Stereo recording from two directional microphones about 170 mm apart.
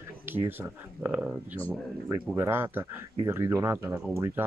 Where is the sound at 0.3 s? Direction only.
10° right (ahead or behind).